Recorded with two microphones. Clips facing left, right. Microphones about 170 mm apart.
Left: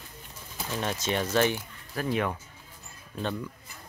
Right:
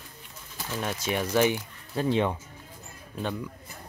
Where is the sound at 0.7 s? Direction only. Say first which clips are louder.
Even; 5° right (ahead or behind).